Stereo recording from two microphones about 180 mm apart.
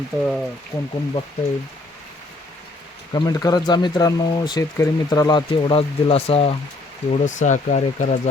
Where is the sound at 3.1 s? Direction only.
20° left (ahead or behind).